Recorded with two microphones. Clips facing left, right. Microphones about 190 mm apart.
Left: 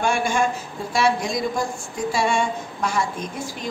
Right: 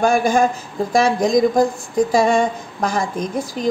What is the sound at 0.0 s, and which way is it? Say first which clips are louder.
A woman's voice: right 6 dB; 40° right (ahead or behind).